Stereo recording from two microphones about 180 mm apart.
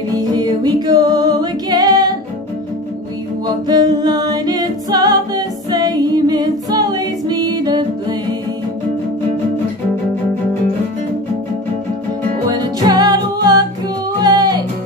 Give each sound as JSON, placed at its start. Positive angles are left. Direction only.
{"t": 0.1, "sound": "music", "side_deg": -20}
{"t": 3.4, "sound": "a capella", "side_deg": -25}
{"t": 12.4, "sound": "music", "side_deg": -20}